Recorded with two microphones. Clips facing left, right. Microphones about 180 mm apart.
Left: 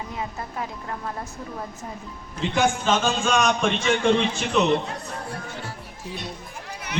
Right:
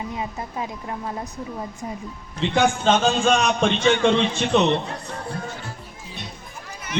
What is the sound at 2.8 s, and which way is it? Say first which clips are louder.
Speech: right 4 dB; 35° right (ahead or behind).